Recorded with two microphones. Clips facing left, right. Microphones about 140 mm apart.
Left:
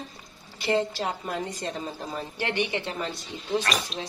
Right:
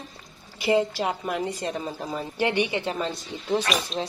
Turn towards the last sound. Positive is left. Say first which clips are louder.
# right 2 dB
turn(degrees=0)  # may be behind; listen again after turning